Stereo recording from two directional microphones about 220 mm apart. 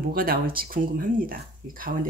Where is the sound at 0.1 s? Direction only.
40° right (ahead or behind).